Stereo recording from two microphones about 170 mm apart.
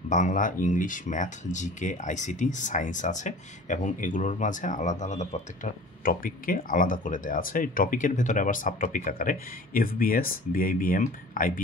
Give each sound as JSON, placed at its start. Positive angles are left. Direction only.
{"t": 0.1, "sound": "speech", "side_deg": 50}